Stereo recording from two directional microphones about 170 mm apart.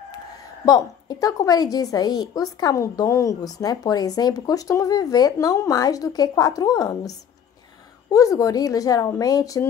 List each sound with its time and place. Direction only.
0.7 s a woman's voice: 20° left (ahead or behind)